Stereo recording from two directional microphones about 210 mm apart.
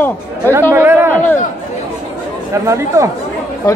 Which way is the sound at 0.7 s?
10° right (ahead or behind).